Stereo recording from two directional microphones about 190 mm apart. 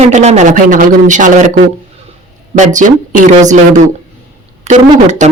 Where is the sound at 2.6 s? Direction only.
40° right (ahead or behind).